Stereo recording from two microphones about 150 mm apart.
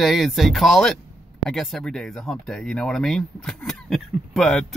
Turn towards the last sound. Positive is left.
turn(degrees=5)  # may be behind; listen again after turning